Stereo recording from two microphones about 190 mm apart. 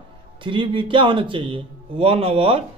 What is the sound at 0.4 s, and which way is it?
Speech, 25° right (ahead or behind).